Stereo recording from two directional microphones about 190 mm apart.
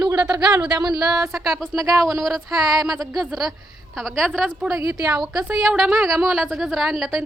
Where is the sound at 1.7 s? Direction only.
15° right (ahead or behind).